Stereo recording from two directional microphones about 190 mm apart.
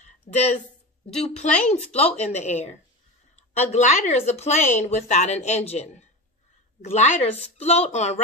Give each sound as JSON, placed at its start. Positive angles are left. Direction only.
{"t": 0.3, "sound": "a woman's voice", "side_deg": 45}